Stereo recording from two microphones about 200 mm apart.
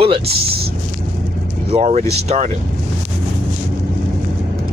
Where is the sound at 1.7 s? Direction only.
30° right (ahead or behind).